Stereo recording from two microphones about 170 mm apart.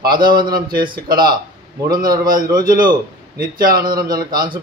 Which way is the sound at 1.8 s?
60° right (ahead or behind).